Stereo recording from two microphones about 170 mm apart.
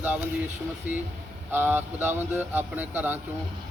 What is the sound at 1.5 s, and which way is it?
Speech, 10° right (ahead or behind).